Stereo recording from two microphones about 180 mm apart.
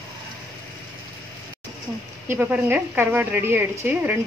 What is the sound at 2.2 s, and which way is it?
A woman's voice, 10° right (ahead or behind).